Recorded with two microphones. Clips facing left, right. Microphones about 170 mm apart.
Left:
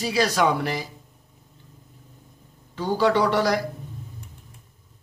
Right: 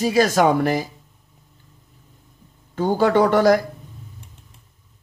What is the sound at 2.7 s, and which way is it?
Speech, 50° right (ahead or behind).